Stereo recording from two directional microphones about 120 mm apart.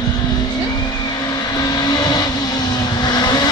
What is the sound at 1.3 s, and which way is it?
Vehicle, 35° left (ahead or behind).